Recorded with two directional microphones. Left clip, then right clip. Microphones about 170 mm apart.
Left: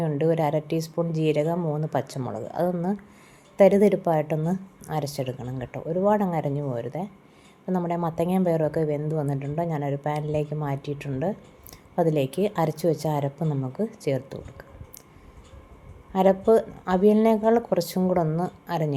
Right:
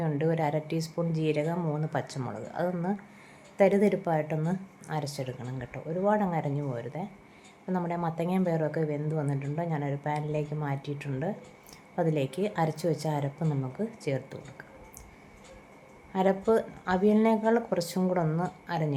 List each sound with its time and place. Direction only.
0.0 s a woman's voice: 25° left (ahead or behind)
16.1 s a woman's voice: 25° left (ahead or behind)